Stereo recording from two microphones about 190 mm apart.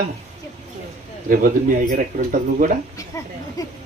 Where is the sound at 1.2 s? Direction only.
50° right (ahead or behind).